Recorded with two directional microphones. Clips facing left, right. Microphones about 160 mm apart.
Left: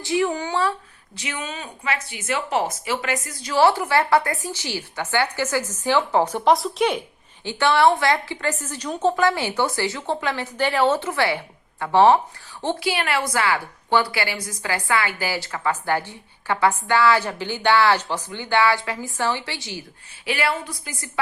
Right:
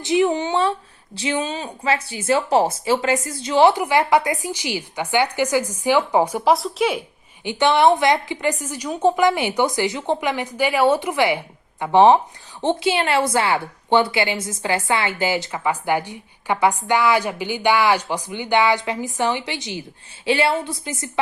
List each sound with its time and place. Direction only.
0.0 s a woman's voice: 20° right (ahead or behind); by 7.0 s centre (ahead or behind)
7.4 s a woman's voice: 20° right (ahead or behind)